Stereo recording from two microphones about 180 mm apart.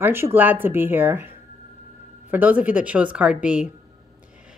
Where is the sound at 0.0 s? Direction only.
10° right (ahead or behind).